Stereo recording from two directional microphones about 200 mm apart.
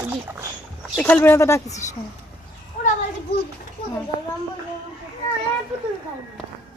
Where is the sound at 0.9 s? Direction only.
10° left (ahead or behind).